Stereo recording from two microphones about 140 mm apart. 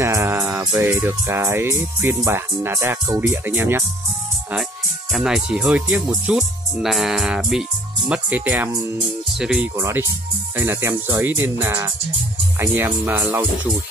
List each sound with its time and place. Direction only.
0.0 s music: 15° right (ahead or behind)
0.7 s speech: 20° right (ahead or behind)
5.1 s music: 5° right (ahead or behind)
8.1 s speech: 10° right (ahead or behind)
9.4 s music: 5° right (ahead or behind)
9.8 s speech: 20° right (ahead or behind)